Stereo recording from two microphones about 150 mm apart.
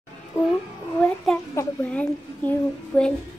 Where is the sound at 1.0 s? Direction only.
5° left (ahead or behind).